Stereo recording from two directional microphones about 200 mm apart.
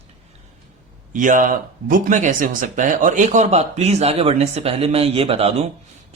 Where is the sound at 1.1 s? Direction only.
40° right (ahead or behind).